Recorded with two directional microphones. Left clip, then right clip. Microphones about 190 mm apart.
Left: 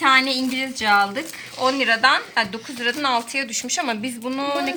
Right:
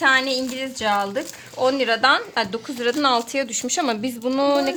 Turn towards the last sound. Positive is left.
turn(degrees=-55)  # may be behind; listen again after turning